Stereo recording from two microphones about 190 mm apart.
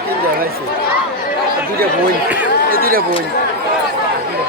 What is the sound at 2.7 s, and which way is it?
Speech, 50° right (ahead or behind).